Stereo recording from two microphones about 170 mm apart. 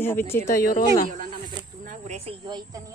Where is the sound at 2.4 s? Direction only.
25° right (ahead or behind).